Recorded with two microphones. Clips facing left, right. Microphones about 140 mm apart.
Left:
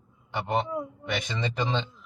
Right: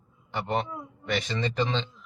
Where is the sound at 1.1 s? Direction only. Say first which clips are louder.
Right 3 dB; 15° left (ahead or behind).